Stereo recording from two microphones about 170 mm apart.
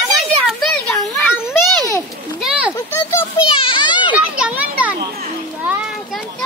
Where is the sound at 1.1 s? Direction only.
15° left (ahead or behind).